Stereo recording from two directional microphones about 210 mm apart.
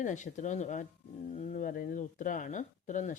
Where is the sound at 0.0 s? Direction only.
35° left (ahead or behind).